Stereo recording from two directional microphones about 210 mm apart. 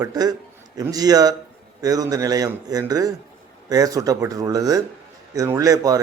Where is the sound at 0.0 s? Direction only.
20° right (ahead or behind).